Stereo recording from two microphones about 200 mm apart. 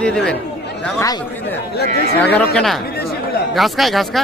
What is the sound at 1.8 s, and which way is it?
Speech, 55° left (ahead or behind).